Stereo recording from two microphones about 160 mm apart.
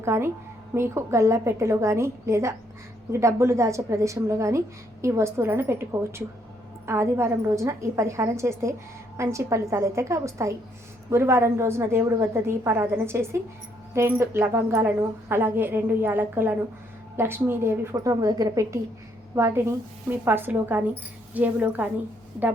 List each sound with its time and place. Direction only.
0.0 s a woman's voice: 15° right (ahead or behind)